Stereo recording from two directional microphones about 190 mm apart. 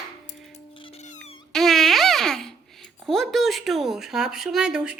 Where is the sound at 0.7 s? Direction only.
30° left (ahead or behind).